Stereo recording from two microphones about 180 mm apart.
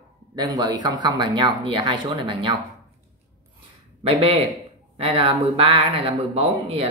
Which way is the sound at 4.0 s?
35° right (ahead or behind).